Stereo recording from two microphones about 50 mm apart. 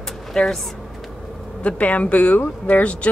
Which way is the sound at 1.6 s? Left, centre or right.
Left.